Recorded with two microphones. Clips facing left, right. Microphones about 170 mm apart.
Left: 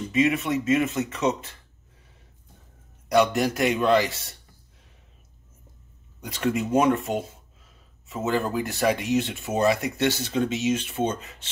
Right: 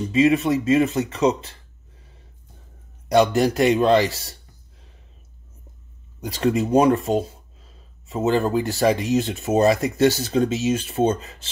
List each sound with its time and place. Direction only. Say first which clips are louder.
0.1 s speech: right 5 dB; 30° right (ahead or behind)
3.1 s speech: right 4 dB; 30° right (ahead or behind)
6.2 s speech: right 5 dB; 35° right (ahead or behind)